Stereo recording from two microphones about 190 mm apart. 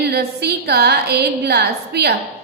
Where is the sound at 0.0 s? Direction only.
60° right (ahead or behind).